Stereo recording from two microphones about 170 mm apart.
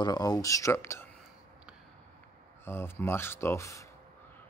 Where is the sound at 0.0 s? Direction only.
25° left (ahead or behind).